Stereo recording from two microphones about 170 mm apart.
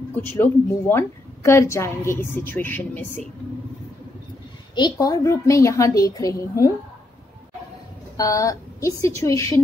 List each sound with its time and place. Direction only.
0.1 s a woman's voice: 10° left (ahead or behind)
4.7 s a woman's voice: 25° left (ahead or behind)
8.2 s a woman's voice: 20° left (ahead or behind)